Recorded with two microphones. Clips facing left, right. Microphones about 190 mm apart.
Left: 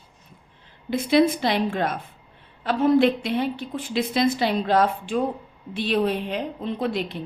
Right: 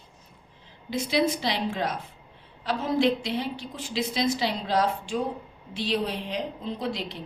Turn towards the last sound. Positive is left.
turn(degrees=55)  # may be behind; listen again after turning